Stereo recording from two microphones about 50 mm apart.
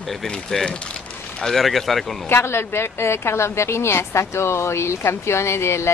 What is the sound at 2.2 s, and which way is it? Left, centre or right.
A woman's voice, left.